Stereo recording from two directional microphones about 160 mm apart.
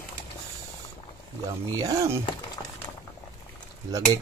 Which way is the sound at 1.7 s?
20° right (ahead or behind).